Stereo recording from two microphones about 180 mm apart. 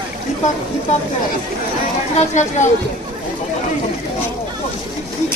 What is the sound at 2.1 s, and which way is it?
Speech, 40° left (ahead or behind).